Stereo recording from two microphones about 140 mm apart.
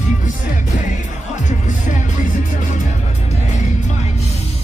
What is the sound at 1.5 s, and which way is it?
Music, 65° left (ahead or behind).